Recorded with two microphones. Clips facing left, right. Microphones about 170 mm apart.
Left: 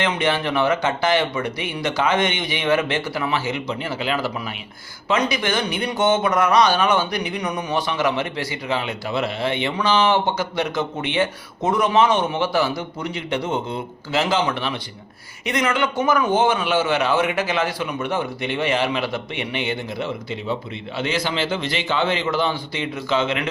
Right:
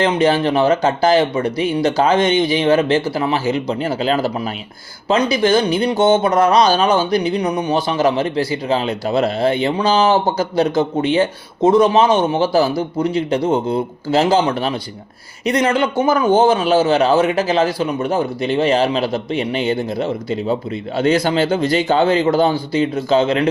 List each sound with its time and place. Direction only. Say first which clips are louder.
0.0 s speech: right 7 dB; 35° right (ahead or behind)